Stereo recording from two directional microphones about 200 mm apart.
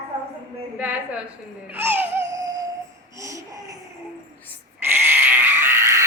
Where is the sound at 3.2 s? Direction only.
15° right (ahead or behind).